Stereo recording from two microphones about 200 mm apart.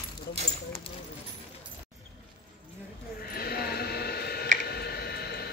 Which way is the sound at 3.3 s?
50° left (ahead or behind).